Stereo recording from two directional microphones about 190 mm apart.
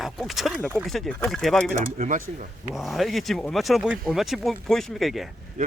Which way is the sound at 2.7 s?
Centre (ahead or behind).